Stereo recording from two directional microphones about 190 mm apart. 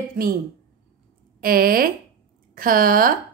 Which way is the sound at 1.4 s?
50° right (ahead or behind).